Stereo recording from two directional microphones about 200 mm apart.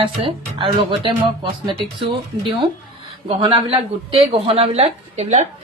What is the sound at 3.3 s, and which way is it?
Speech, 30° right (ahead or behind).